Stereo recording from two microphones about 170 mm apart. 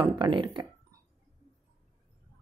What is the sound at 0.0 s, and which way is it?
Speech, 25° right (ahead or behind).